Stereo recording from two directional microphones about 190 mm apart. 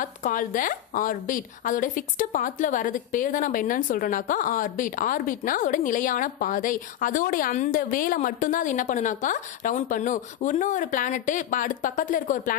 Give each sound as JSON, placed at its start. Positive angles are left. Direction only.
{"t": 0.0, "sound": "a woman's voice", "side_deg": 45}